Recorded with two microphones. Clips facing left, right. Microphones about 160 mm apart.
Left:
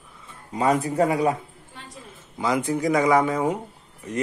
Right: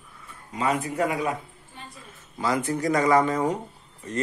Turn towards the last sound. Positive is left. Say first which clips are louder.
# left 1 dB
turn(degrees=10)  # may be behind; listen again after turning